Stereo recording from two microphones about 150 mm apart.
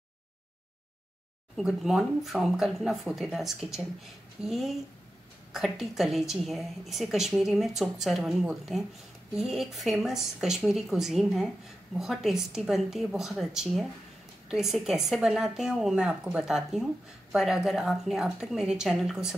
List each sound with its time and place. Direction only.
1.6 s a woman's voice: centre (ahead or behind)